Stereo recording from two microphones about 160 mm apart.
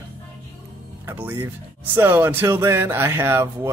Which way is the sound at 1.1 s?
15° right (ahead or behind).